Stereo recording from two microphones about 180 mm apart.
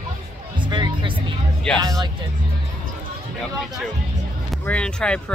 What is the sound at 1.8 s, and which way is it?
Speech, 20° right (ahead or behind).